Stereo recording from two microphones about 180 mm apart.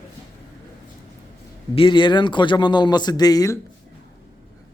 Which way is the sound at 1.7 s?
25° left (ahead or behind).